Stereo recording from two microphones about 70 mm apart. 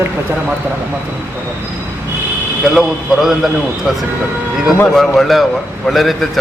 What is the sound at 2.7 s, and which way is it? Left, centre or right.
A man's voice, centre.